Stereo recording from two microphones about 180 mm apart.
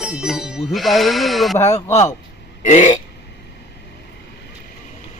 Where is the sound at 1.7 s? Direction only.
40° left (ahead or behind).